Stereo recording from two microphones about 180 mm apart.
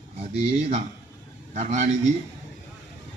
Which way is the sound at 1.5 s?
40° right (ahead or behind).